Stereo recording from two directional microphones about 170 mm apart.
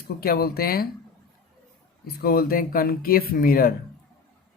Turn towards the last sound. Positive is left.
turn(degrees=60)  # may be behind; listen again after turning